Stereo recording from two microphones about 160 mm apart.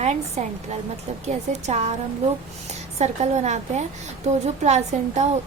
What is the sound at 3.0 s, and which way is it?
A woman's voice, 45° right (ahead or behind).